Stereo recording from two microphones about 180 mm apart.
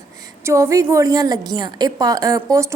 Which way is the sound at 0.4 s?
15° right (ahead or behind).